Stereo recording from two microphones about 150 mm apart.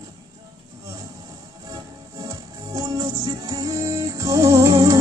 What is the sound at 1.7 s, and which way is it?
Music, 25° right (ahead or behind).